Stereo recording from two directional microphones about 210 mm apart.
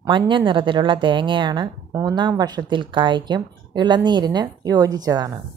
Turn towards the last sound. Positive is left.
turn(degrees=-20)  # may be behind; listen again after turning